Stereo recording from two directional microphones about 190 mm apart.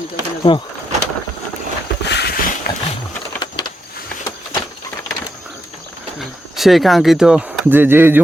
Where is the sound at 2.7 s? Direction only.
45° left (ahead or behind).